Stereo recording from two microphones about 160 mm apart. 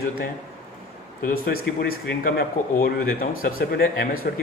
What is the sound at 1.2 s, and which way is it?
Speech, 65° left (ahead or behind).